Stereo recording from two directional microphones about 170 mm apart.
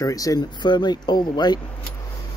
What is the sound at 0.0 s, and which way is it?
Speech, 20° left (ahead or behind).